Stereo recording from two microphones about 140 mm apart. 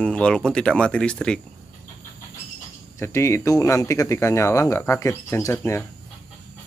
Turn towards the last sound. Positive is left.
turn(degrees=15)  # may be behind; listen again after turning